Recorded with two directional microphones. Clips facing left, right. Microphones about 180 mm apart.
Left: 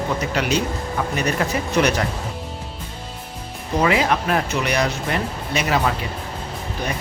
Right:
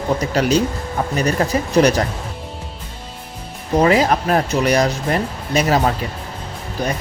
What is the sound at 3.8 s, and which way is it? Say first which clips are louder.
Speech: right 4 dB; 40° right (ahead or behind).